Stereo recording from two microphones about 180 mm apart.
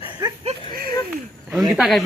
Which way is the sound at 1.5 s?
5° right (ahead or behind).